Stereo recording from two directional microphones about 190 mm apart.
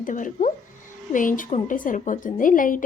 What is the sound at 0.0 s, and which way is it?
A woman's voice, 45° left (ahead or behind).